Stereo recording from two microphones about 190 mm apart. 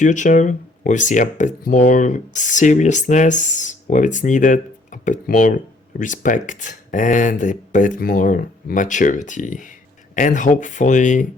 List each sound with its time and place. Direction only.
0.0 s speech: 40° left (ahead or behind)